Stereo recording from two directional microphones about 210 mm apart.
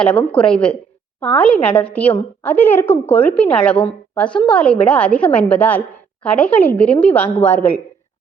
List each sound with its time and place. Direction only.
0.0 s a woman's voice: 5° left (ahead or behind)